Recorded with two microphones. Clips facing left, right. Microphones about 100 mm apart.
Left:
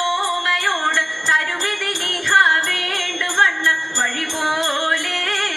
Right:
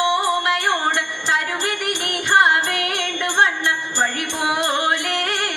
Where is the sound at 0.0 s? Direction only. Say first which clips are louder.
Right 2 dB; 20° right (ahead or behind).